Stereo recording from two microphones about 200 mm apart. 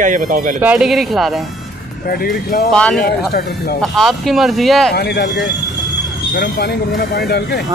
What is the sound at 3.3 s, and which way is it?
Speech, 50° left (ahead or behind).